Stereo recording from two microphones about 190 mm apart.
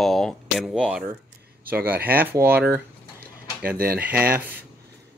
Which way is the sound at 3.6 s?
50° right (ahead or behind).